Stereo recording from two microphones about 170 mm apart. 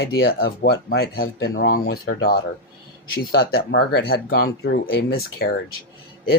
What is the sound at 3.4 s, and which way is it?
Speech, 65° left (ahead or behind).